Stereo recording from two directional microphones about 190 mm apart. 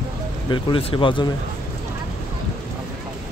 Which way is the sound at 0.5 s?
25° left (ahead or behind).